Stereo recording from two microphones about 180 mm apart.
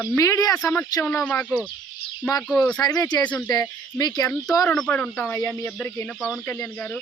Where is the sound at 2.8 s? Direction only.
20° left (ahead or behind).